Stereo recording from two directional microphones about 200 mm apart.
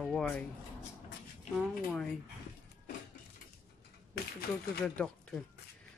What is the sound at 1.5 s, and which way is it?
Speech, 5° left (ahead or behind).